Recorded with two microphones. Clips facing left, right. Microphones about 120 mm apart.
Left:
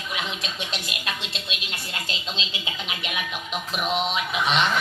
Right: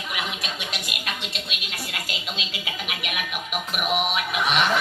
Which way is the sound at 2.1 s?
25° left (ahead or behind).